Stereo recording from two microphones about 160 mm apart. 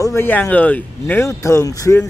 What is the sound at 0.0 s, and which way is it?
Speech, 15° left (ahead or behind).